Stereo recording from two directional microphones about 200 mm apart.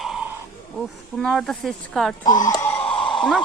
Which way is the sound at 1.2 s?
Centre (ahead or behind).